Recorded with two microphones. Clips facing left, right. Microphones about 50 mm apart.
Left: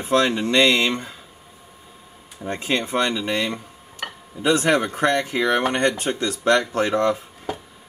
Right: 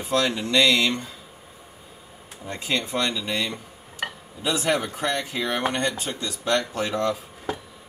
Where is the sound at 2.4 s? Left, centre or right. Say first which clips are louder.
Left 4 dB; left.